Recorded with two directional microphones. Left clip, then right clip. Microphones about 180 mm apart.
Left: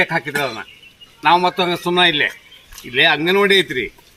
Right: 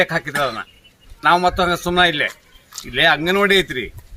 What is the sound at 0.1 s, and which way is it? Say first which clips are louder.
A man's voice: even; 15° right (ahead or behind).